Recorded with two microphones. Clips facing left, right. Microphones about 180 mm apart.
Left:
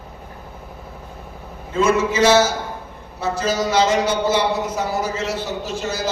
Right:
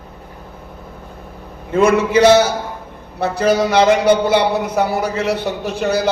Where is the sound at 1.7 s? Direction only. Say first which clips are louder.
Right 5 dB; 60° right (ahead or behind).